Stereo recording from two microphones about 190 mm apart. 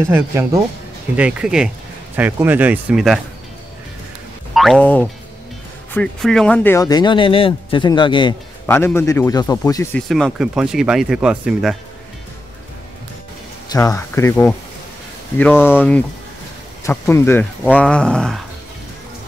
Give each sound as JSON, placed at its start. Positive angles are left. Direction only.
{"t": 0.1, "sound": "speech", "side_deg": -15}
{"t": 4.6, "sound": "speech", "side_deg": 0}
{"t": 8.6, "sound": "speech", "side_deg": 10}
{"t": 9.9, "sound": "speech", "side_deg": 5}
{"t": 13.7, "sound": "speech", "side_deg": 15}
{"t": 16.8, "sound": "speech", "side_deg": 10}